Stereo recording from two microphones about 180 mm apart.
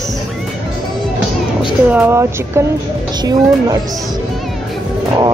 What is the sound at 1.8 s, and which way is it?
Speech, 10° right (ahead or behind).